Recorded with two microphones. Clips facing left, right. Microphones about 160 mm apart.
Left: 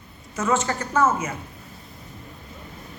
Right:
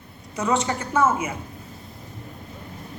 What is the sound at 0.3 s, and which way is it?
A woman's voice, 15° right (ahead or behind).